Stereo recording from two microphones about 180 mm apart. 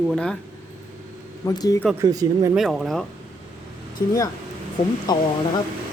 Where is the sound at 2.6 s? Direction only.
Centre (ahead or behind).